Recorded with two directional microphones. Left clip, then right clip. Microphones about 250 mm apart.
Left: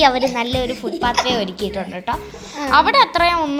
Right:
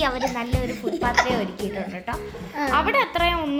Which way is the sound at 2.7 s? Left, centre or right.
Left.